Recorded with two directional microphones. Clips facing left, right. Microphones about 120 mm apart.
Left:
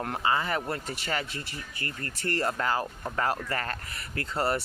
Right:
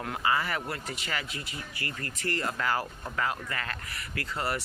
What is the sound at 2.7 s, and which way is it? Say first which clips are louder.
Speech: left 1 dB; 20° left (ahead or behind).